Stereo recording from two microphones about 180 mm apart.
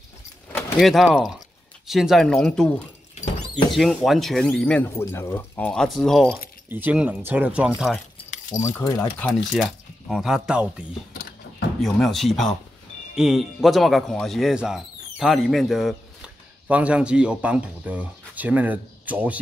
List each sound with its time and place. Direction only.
0.7 s speech: centre (ahead or behind)
3.7 s speech: centre (ahead or behind)
8.5 s speech: 15° left (ahead or behind); by 10.7 s 5° right (ahead or behind)
11.8 s speech: centre (ahead or behind)